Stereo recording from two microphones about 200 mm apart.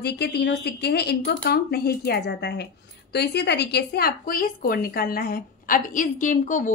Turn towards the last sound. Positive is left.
turn(degrees=40)  # may be behind; listen again after turning